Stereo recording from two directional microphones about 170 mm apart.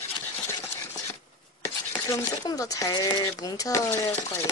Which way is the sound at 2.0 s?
20° left (ahead or behind).